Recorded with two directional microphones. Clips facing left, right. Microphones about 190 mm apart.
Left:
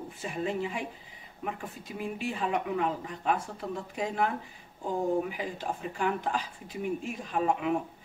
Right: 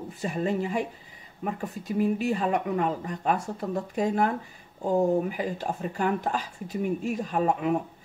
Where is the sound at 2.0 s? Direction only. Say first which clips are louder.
Right 8 dB; 40° right (ahead or behind).